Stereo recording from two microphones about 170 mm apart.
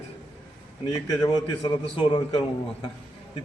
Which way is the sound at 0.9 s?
25° left (ahead or behind).